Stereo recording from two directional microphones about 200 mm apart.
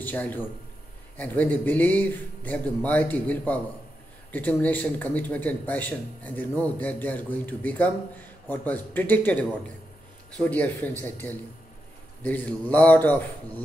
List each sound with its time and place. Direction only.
0.0 s a man's voice: 10° left (ahead or behind)